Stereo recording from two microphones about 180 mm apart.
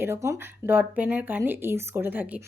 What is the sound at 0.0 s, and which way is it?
Speech, 15° right (ahead or behind).